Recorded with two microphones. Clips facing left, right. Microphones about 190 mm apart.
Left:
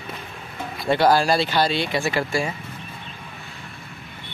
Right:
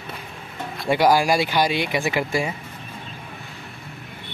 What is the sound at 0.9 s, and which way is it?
Speech, 10° right (ahead or behind).